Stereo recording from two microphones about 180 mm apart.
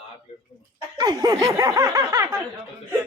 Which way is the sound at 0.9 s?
20° right (ahead or behind).